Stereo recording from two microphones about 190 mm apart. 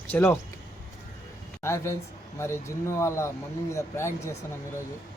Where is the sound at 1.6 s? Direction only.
15° left (ahead or behind).